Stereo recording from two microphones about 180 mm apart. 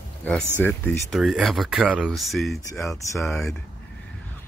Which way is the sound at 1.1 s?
Centre (ahead or behind).